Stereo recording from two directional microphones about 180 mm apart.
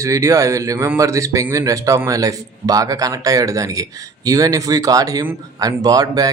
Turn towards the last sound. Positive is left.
turn(degrees=-20)  # may be behind; listen again after turning